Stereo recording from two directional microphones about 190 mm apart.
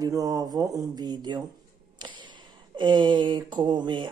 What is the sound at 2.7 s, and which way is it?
Speech, 25° right (ahead or behind).